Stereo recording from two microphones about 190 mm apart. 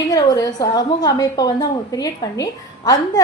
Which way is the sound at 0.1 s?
20° left (ahead or behind).